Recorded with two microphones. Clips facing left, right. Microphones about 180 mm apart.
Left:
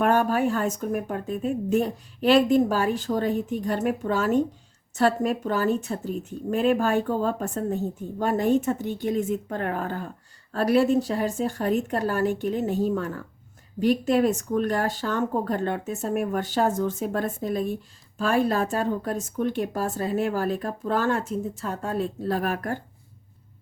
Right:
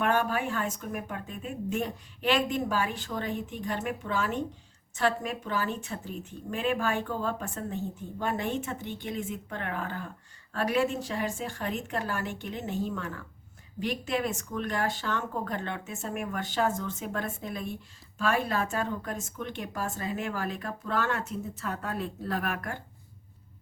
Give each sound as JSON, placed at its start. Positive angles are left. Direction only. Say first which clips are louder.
{"t": 0.0, "sound": "speech", "louder": "left 6 dB", "side_deg": 40}